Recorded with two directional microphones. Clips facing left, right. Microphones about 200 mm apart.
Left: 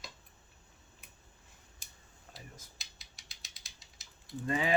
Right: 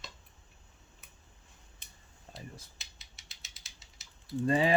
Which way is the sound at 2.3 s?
30° right (ahead or behind).